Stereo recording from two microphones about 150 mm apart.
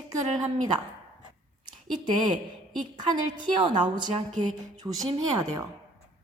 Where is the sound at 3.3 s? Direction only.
30° right (ahead or behind).